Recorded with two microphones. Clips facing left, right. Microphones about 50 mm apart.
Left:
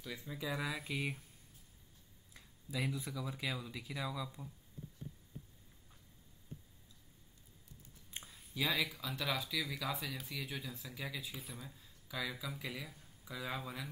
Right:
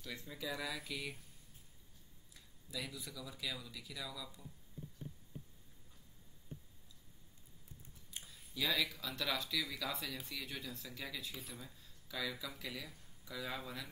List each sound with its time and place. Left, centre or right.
0.0 s speech: centre
2.3 s speech: left
8.5 s speech: centre